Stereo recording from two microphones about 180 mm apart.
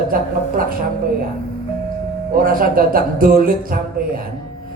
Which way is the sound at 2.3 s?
50° right (ahead or behind).